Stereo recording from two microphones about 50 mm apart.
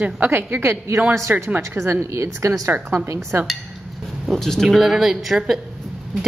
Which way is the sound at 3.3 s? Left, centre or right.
Right.